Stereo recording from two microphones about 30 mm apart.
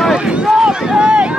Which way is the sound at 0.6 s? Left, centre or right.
Right.